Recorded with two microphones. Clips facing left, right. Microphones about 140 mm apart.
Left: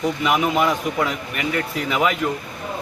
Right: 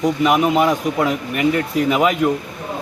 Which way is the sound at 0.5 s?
35° right (ahead or behind).